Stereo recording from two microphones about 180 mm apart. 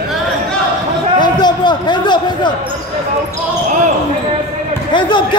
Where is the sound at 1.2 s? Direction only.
25° left (ahead or behind).